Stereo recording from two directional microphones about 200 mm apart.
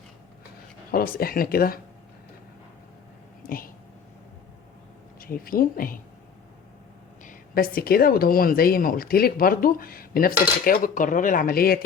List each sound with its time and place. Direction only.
0.9 s speech: 45° left (ahead or behind)
5.2 s speech: 45° left (ahead or behind)
7.3 s speech: 45° left (ahead or behind)